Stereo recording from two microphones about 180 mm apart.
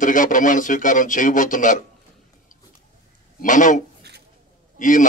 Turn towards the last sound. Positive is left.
turn(degrees=45)  # may be behind; listen again after turning